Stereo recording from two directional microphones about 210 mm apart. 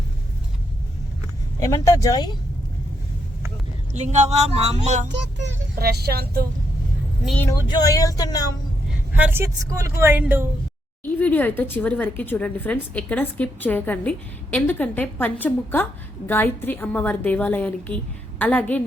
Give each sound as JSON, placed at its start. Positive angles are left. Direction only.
{"t": 1.5, "sound": "speech", "side_deg": 15}
{"t": 3.9, "sound": "speech", "side_deg": -35}
{"t": 5.4, "sound": "a child's voice", "side_deg": -50}
{"t": 7.3, "sound": "speech", "side_deg": 10}
{"t": 9.1, "sound": "speech", "side_deg": -10}
{"t": 11.0, "sound": "speech", "side_deg": 10}